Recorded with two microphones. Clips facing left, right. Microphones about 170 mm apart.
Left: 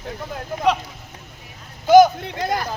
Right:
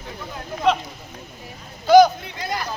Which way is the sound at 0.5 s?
50° left (ahead or behind).